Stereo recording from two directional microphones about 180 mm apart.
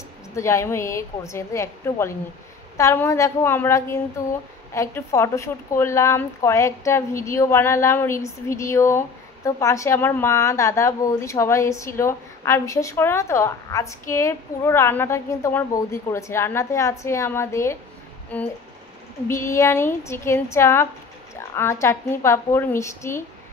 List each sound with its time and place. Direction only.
0.4 s a woman's voice: 15° left (ahead or behind)
19.2 s a woman's voice: 15° left (ahead or behind)